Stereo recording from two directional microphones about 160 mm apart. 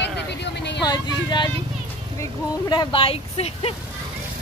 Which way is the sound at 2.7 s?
30° left (ahead or behind).